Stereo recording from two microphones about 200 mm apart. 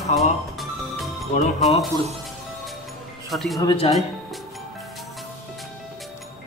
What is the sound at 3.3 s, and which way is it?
Speech, centre (ahead or behind).